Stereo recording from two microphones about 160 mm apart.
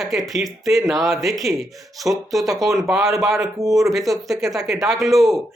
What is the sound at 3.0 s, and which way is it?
Speech, 20° right (ahead or behind).